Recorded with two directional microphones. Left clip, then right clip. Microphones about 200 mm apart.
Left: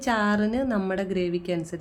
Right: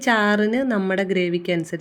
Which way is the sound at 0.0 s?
15° right (ahead or behind).